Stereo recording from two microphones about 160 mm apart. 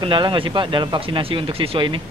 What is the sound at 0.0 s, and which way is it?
Speech, 30° right (ahead or behind).